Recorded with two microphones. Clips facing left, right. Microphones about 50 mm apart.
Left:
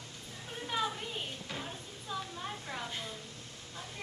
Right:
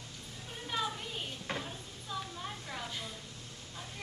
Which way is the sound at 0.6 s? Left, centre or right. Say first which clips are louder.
Left 1 dB; centre.